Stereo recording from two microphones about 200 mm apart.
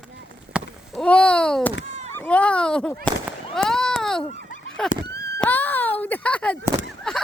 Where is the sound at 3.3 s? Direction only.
Centre (ahead or behind).